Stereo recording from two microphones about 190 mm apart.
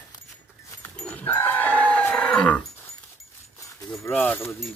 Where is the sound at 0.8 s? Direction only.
10° left (ahead or behind).